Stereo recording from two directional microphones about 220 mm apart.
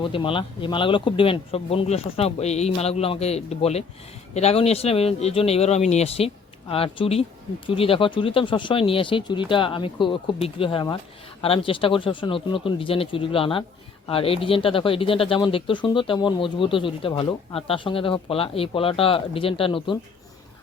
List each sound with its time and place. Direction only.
0.0 s speech: 25° left (ahead or behind)